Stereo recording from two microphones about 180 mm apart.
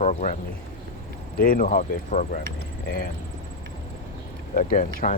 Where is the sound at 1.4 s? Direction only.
50° left (ahead or behind).